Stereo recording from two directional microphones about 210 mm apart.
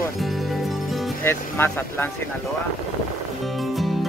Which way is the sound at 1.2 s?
10° left (ahead or behind).